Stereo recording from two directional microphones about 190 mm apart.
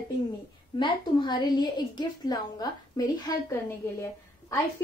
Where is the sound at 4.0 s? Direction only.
15° left (ahead or behind).